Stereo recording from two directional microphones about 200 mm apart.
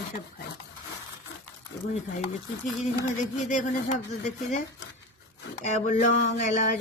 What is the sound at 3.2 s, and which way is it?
Speech, 40° left (ahead or behind).